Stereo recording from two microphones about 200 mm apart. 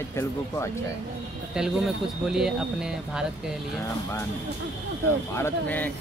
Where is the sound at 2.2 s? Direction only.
Centre (ahead or behind).